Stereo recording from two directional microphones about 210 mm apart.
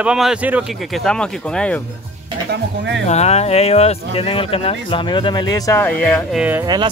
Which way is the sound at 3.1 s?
30° left (ahead or behind).